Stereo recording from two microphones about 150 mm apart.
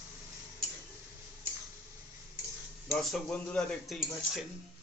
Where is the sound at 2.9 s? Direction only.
5° left (ahead or behind).